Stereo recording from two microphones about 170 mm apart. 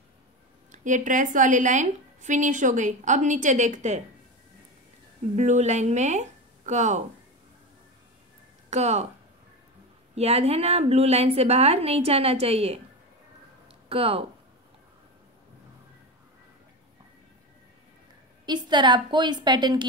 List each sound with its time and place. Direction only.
0.7 s a woman's voice: 45° right (ahead or behind)
5.3 s speech: 45° right (ahead or behind)
8.6 s speech: 40° right (ahead or behind)
10.1 s a woman's voice: 35° right (ahead or behind)
13.8 s speech: 35° right (ahead or behind)
18.4 s a woman's voice: 25° right (ahead or behind)